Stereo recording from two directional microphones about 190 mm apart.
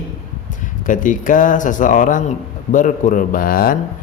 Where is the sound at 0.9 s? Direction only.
45° left (ahead or behind).